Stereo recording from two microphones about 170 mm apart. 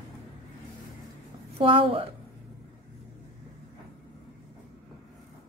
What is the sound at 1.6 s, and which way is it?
Speech, 35° right (ahead or behind).